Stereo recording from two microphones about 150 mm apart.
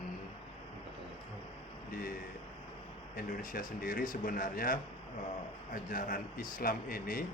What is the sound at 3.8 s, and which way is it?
A man's voice, 65° left (ahead or behind).